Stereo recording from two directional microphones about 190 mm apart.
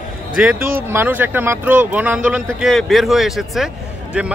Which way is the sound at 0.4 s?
5° right (ahead or behind).